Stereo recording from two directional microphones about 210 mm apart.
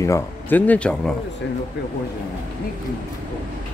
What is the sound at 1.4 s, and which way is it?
Speech, 60° left (ahead or behind).